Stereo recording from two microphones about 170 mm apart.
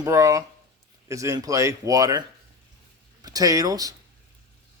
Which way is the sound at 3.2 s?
20° right (ahead or behind).